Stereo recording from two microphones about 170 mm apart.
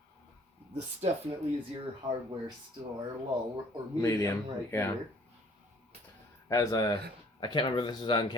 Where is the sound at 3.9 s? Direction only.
10° left (ahead or behind).